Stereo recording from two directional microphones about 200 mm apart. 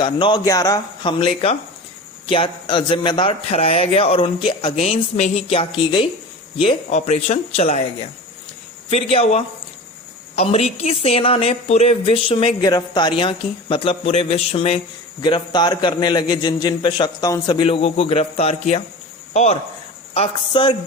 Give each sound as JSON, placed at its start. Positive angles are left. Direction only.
{"t": 0.0, "sound": "speech", "side_deg": 25}
{"t": 8.9, "sound": "speech", "side_deg": 30}